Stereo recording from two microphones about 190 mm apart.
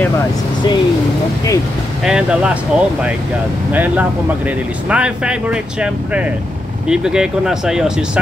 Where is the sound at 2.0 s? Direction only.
5° right (ahead or behind).